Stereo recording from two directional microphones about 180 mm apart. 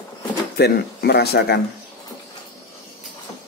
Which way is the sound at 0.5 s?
60° left (ahead or behind).